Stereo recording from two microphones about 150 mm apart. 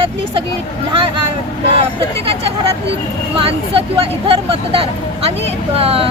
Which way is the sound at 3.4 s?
40° right (ahead or behind).